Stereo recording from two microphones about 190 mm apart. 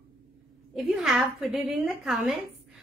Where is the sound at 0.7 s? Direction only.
Centre (ahead or behind).